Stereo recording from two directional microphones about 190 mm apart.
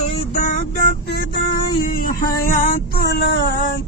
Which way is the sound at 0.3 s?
40° left (ahead or behind).